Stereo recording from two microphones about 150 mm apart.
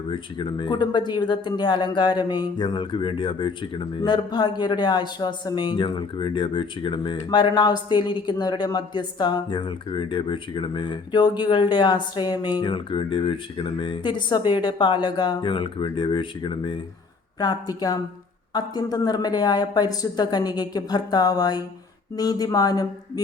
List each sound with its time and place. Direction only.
0.1 s speech: 30° left (ahead or behind)